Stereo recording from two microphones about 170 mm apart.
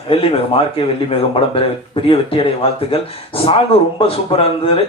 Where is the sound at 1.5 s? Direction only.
35° left (ahead or behind).